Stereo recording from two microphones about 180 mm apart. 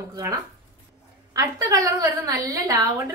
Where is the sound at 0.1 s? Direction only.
20° right (ahead or behind).